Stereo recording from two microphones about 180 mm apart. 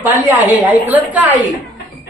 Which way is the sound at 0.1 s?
10° right (ahead or behind).